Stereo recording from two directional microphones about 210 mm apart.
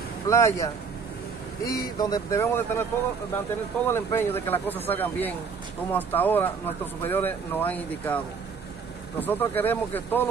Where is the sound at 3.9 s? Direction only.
10° left (ahead or behind).